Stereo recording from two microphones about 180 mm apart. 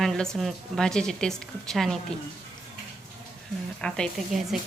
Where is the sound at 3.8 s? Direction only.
Centre (ahead or behind).